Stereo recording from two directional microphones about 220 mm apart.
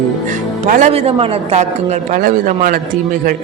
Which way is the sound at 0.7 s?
35° right (ahead or behind).